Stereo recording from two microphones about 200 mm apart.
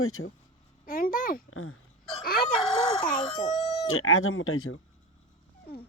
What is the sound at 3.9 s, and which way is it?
Speech, 90° left.